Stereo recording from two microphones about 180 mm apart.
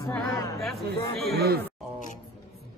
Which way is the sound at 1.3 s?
60° right (ahead or behind).